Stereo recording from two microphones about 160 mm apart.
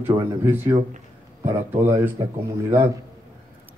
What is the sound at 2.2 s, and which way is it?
Speech, 25° right (ahead or behind).